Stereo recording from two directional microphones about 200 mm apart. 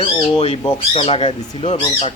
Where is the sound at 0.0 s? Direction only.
30° left (ahead or behind).